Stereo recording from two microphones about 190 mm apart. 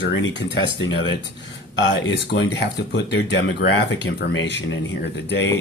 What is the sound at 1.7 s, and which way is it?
Speech, 70° left (ahead or behind).